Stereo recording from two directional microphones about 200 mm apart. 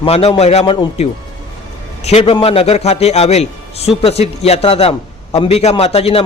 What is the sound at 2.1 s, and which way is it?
A man's voice, 30° left (ahead or behind).